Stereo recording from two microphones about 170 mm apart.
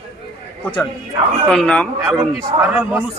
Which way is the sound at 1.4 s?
5° left (ahead or behind).